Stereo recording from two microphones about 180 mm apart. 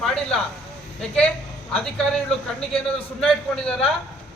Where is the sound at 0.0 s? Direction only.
5° left (ahead or behind).